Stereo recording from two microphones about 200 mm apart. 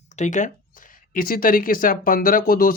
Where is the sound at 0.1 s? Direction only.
35° left (ahead or behind).